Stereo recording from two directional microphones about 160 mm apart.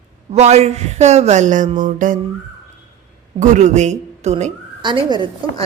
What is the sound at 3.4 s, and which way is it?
A woman's voice, 50° right (ahead or behind).